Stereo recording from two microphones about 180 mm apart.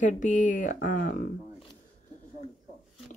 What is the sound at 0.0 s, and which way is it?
Speech, 45° left (ahead or behind).